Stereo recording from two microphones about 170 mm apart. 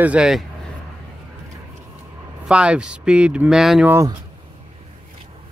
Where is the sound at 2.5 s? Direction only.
5° right (ahead or behind).